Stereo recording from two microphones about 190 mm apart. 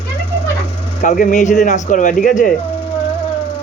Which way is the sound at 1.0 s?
45° left (ahead or behind).